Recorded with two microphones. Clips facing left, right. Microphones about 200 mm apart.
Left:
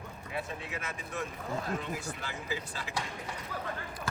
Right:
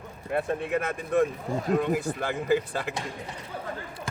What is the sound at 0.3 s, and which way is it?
Speech, 55° right (ahead or behind).